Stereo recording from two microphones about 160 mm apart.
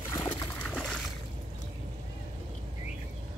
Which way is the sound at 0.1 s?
25° left (ahead or behind).